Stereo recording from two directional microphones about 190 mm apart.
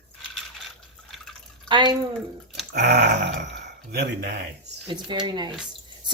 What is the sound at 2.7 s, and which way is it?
Speech, 60° right (ahead or behind).